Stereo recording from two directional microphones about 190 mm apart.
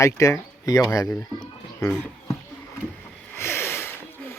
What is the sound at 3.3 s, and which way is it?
Snort, 15° left (ahead or behind).